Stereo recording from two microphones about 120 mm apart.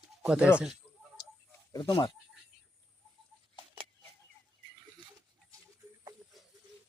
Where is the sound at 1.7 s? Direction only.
35° left (ahead or behind).